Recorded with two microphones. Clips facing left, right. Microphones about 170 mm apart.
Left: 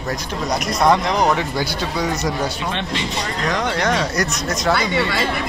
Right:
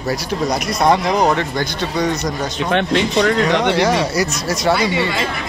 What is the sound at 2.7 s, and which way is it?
Speech, 60° right (ahead or behind).